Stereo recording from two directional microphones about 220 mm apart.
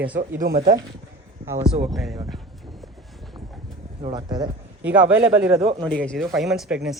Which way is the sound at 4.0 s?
20° right (ahead or behind).